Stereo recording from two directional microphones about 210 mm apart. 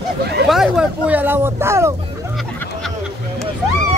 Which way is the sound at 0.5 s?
5° right (ahead or behind).